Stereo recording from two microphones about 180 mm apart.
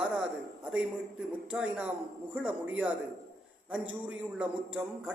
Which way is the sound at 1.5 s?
5° right (ahead or behind).